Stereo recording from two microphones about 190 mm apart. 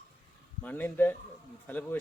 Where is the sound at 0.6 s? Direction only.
10° left (ahead or behind).